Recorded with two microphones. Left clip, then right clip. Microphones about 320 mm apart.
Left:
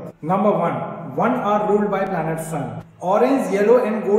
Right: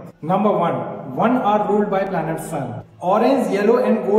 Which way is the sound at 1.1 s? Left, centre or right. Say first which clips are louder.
Right 2 dB; centre.